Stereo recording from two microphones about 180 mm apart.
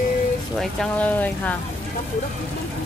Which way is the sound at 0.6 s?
5° left (ahead or behind).